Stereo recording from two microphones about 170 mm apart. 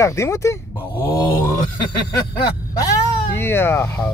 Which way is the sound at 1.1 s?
25° left (ahead or behind).